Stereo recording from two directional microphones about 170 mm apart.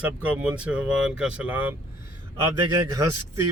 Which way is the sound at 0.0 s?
5° right (ahead or behind).